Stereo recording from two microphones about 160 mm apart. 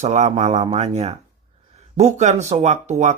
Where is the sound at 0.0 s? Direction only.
45° right (ahead or behind).